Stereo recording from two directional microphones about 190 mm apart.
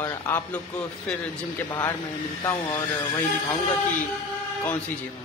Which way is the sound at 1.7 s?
20° left (ahead or behind).